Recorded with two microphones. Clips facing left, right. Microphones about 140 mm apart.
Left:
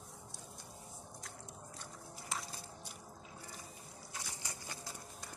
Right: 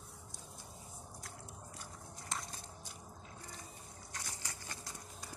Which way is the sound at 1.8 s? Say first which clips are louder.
Left 1 dB; centre (ahead or behind).